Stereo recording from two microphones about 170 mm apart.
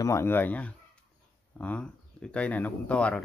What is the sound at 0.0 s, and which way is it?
Speech, 15° left (ahead or behind).